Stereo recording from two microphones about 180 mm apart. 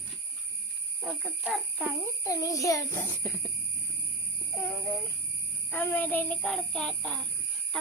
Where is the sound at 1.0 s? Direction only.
5° left (ahead or behind).